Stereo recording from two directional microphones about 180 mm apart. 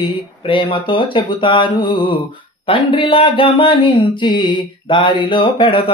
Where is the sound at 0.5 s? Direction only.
25° left (ahead or behind).